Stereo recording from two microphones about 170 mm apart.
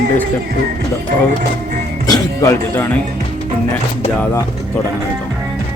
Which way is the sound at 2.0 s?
20° left (ahead or behind).